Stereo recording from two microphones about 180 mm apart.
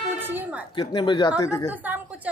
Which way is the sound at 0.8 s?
25° left (ahead or behind).